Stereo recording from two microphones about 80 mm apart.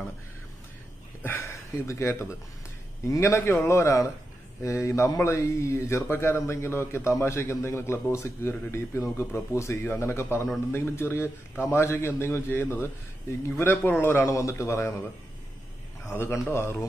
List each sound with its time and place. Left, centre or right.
1.4 s speech: left
14.2 s speech: left
16.2 s speech: left